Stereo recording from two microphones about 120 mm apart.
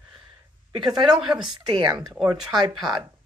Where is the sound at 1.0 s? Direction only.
5° right (ahead or behind).